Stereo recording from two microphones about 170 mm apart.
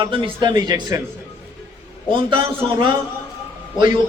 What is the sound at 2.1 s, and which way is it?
Speech, 30° right (ahead or behind).